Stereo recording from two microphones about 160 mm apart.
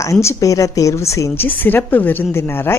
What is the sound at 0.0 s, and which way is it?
A woman's voice, 20° left (ahead or behind).